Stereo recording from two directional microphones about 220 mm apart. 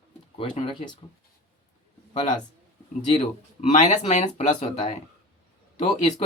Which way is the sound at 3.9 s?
30° left (ahead or behind).